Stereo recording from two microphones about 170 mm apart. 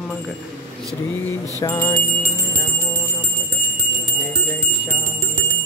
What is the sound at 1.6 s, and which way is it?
Music, 20° left (ahead or behind).